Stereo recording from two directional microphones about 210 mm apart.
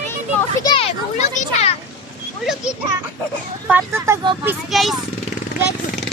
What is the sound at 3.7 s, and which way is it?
Speech, 10° right (ahead or behind).